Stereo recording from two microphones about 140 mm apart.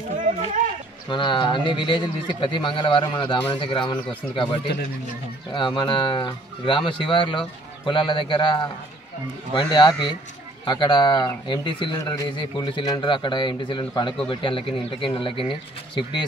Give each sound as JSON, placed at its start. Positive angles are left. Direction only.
{"t": 1.1, "sound": "speech", "side_deg": 35}